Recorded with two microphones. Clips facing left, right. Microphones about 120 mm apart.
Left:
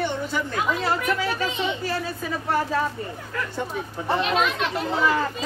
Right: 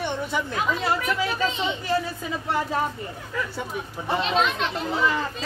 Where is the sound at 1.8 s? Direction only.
25° right (ahead or behind).